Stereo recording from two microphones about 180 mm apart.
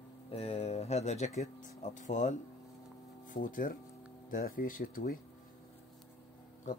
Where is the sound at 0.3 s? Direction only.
35° left (ahead or behind); by 5.2 s 50° left (ahead or behind).